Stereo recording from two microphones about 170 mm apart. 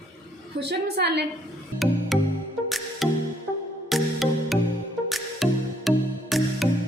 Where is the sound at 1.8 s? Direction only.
Centre (ahead or behind).